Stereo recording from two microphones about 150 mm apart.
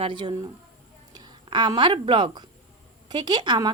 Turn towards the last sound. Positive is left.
turn(degrees=-30)  # may be behind; listen again after turning